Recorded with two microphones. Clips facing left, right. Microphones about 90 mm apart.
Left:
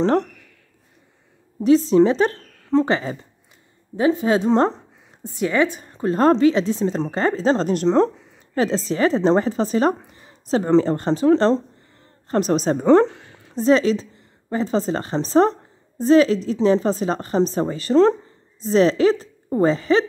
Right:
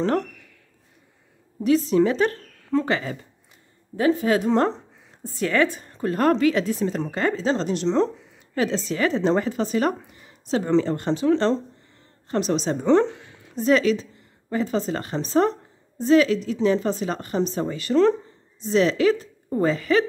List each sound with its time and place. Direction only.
0.0 s a woman's voice: 25° left (ahead or behind)
1.6 s a woman's voice: 30° left (ahead or behind)
13.6 s speech: 30° left (ahead or behind)